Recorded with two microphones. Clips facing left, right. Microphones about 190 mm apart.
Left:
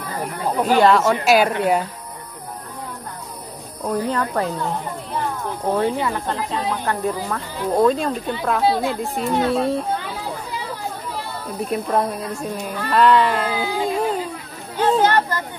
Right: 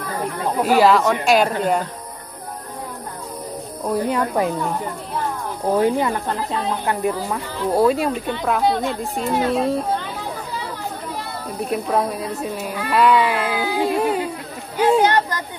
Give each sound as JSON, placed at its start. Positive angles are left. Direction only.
{"t": 0.6, "sound": "a woman's voice", "side_deg": -5}
{"t": 3.9, "sound": "speech", "side_deg": -10}
{"t": 5.8, "sound": "speech", "side_deg": -15}
{"t": 8.3, "sound": "a woman's voice", "side_deg": 5}
{"t": 11.6, "sound": "a woman's voice", "side_deg": 0}